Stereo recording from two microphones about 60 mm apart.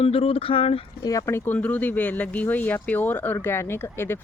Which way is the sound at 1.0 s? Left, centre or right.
Left.